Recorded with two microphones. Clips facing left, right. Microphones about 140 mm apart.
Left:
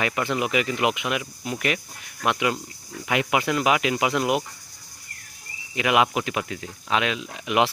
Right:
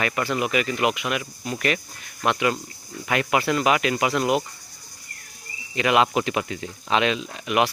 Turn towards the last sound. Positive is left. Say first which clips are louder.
# even
turn(degrees=15)  # may be behind; listen again after turning